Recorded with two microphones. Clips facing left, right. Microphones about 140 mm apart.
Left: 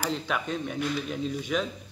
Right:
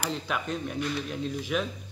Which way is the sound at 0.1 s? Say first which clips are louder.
Left 1 dB; centre (ahead or behind).